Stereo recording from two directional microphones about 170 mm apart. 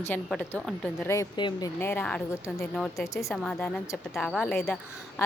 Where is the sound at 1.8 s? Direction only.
10° left (ahead or behind).